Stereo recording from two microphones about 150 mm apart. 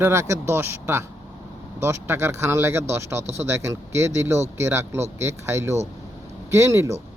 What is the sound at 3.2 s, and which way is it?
Speech, 45° right (ahead or behind).